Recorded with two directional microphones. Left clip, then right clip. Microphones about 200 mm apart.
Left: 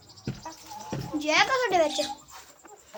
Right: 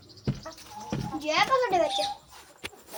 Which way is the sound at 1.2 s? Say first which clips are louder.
Left 1 dB; 25° left (ahead or behind).